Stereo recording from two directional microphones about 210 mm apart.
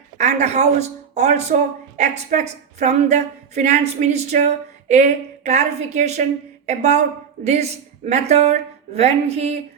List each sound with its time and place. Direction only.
0.2 s a woman's voice: 35° right (ahead or behind)